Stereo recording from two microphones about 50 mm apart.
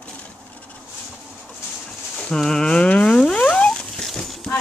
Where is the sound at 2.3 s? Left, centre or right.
Centre.